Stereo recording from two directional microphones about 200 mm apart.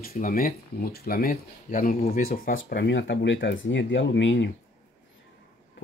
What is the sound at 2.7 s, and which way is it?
Speech, 60° left (ahead or behind).